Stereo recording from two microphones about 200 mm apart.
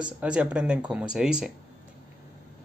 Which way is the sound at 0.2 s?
5° right (ahead or behind).